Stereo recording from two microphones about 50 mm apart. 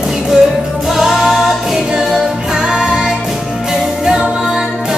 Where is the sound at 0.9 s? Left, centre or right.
Centre.